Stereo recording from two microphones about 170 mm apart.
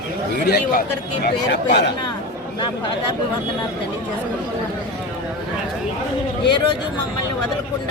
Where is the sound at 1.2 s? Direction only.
90° left.